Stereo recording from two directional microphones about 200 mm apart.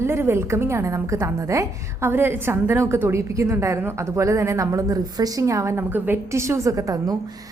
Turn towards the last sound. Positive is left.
turn(degrees=-15)  # may be behind; listen again after turning